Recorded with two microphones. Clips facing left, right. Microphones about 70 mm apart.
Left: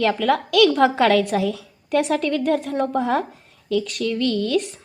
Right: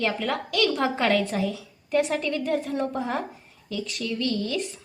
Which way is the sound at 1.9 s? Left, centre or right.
Left.